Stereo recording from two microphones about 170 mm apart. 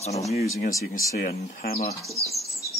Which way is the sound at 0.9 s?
60° left (ahead or behind).